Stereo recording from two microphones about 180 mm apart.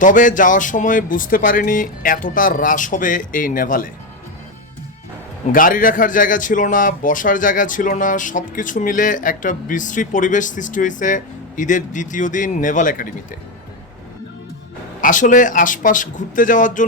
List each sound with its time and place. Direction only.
0.0 s a man's voice: 45° left (ahead or behind)
5.5 s a man's voice: 50° left (ahead or behind)
15.0 s a man's voice: 45° left (ahead or behind)